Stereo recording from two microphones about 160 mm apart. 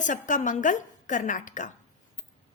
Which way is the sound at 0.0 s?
50° left (ahead or behind).